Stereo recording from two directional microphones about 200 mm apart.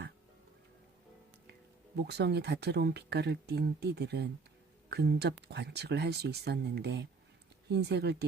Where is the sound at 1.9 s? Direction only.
55° right (ahead or behind).